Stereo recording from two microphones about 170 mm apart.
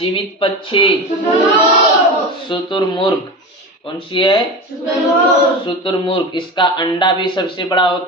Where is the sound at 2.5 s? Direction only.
30° left (ahead or behind).